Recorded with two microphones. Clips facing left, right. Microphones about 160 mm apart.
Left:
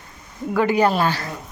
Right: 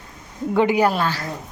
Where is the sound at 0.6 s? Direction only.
15° right (ahead or behind).